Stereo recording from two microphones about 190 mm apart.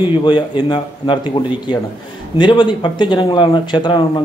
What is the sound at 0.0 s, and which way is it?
Speech, 25° left (ahead or behind).